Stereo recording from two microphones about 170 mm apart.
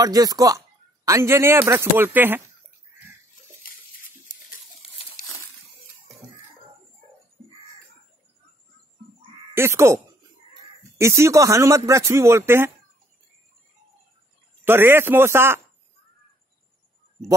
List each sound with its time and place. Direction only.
0.0 s speech: 20° right (ahead or behind)
5.1 s a sound: 20° left (ahead or behind)
9.5 s speech: 15° right (ahead or behind)
11.0 s speech: 15° right (ahead or behind)
14.6 s speech: 15° right (ahead or behind)